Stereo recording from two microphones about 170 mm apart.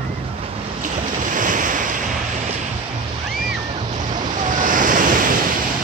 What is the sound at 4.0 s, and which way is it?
Waves, 50° right (ahead or behind).